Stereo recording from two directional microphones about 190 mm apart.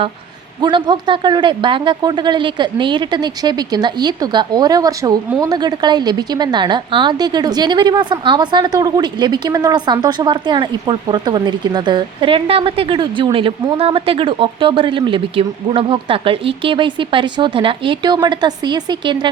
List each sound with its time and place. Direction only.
0.6 s a woman's voice: 25° right (ahead or behind)